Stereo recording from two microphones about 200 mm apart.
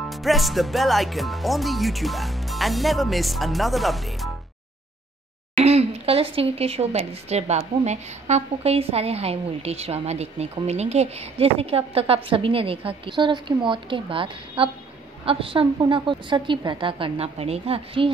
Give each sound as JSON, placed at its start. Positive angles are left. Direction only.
{"t": 0.1, "sound": "speech", "side_deg": 0}
{"t": 5.6, "sound": "a woman's voice", "side_deg": -30}